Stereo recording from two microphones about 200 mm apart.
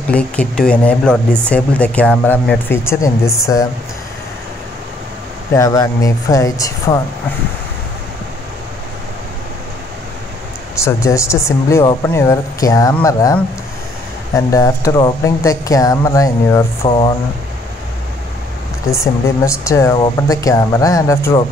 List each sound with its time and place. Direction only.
0.1 s speech: 5° left (ahead or behind)
5.5 s speech: 15° left (ahead or behind)
10.8 s speech: 15° left (ahead or behind)
16.8 s speech: 25° left (ahead or behind)
19.2 s speech: 15° left (ahead or behind)